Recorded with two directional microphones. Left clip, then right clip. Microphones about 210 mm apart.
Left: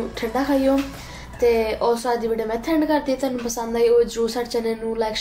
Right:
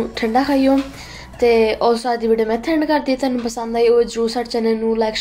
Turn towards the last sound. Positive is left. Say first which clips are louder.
# right 6 dB
turn(degrees=-35)  # may be behind; listen again after turning